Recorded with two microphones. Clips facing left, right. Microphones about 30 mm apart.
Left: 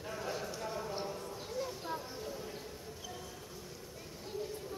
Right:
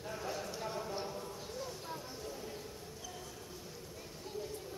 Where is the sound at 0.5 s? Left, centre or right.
Centre.